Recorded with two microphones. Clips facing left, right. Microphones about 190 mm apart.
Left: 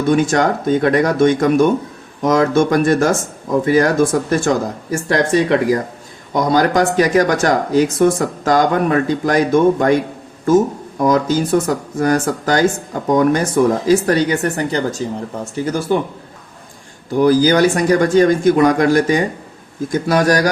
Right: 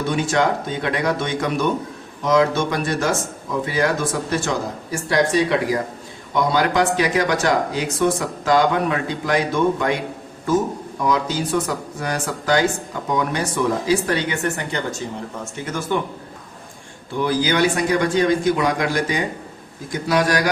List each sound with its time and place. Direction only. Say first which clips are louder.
0.1 s speech: left 6 dB; 45° left (ahead or behind)
11.0 s speech: left 7 dB; 45° left (ahead or behind)
17.1 s speech: left 8 dB; 40° left (ahead or behind)